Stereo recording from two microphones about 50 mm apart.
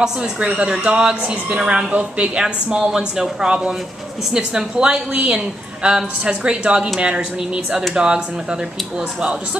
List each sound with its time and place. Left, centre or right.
0.0 s a woman's voice: centre